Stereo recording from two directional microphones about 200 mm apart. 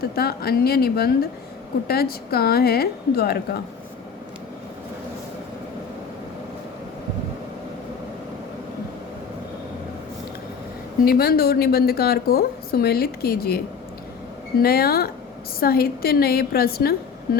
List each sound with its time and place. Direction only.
0.0 s a woman's voice: 50° left (ahead or behind)
11.0 s a woman's voice: 50° left (ahead or behind)
14.6 s a woman's voice: 50° left (ahead or behind)
17.3 s a sound: 50° left (ahead or behind)